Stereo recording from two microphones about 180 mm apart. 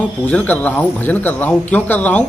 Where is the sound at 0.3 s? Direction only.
10° left (ahead or behind).